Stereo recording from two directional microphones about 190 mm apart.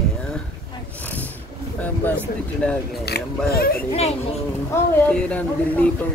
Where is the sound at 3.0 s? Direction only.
55° left (ahead or behind).